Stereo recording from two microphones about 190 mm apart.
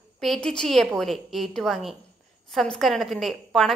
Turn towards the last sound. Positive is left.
turn(degrees=0)  # may be behind; listen again after turning